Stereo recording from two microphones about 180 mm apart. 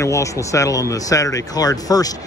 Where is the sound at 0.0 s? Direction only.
15° left (ahead or behind).